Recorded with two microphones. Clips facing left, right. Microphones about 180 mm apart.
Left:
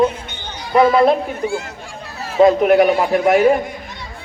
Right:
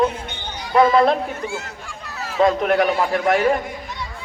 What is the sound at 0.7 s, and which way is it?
Speech, 5° left (ahead or behind).